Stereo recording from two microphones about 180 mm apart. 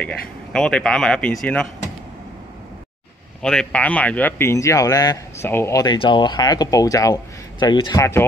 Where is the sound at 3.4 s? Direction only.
5° left (ahead or behind).